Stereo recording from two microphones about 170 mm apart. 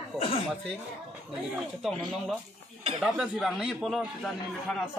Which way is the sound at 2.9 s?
Centre (ahead or behind).